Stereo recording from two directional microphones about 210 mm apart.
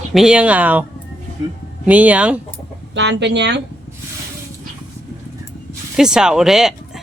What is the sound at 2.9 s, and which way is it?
Speech, 55° right (ahead or behind).